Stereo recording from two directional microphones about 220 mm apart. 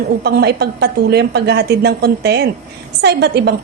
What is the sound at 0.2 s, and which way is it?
A woman's voice, 45° right (ahead or behind).